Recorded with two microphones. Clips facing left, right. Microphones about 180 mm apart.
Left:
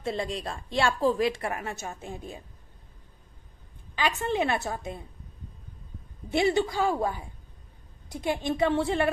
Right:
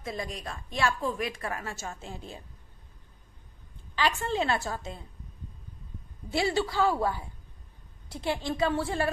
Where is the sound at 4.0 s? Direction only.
20° left (ahead or behind).